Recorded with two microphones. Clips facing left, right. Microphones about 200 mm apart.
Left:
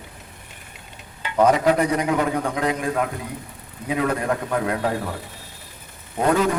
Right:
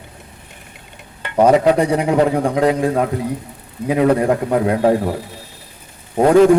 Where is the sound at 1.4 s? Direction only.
30° right (ahead or behind).